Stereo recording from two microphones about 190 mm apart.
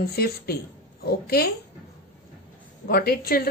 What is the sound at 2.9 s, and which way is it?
Speech, 55° left (ahead or behind).